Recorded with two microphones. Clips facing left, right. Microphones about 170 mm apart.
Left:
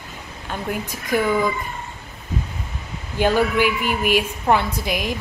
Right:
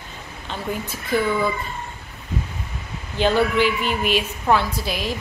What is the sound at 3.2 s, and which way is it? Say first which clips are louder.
A woman's voice: even; 10° left (ahead or behind).